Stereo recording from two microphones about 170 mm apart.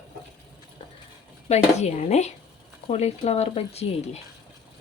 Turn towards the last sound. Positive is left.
turn(degrees=40)  # may be behind; listen again after turning